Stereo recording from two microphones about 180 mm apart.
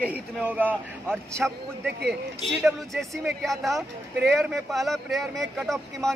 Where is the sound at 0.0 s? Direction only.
10° right (ahead or behind).